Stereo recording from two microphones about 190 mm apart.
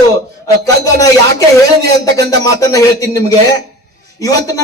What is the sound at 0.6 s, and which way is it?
Speech, 20° left (ahead or behind).